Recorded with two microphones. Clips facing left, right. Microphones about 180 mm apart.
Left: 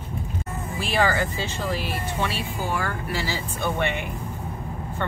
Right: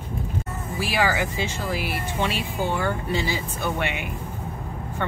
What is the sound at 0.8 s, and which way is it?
Speech, 10° right (ahead or behind).